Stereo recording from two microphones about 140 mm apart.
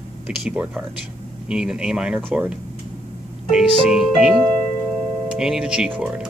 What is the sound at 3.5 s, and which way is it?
Speech, centre (ahead or behind).